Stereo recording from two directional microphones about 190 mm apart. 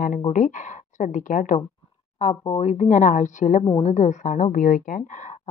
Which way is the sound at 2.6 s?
40° left (ahead or behind).